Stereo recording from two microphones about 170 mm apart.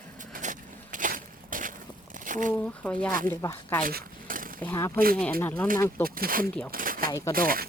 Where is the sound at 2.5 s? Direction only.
10° left (ahead or behind).